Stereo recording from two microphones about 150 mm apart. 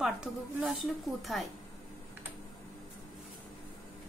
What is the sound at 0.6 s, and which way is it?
Speech, centre (ahead or behind).